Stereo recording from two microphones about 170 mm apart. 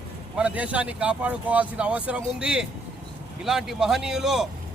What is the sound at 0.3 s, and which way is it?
A man's voice, 5° right (ahead or behind).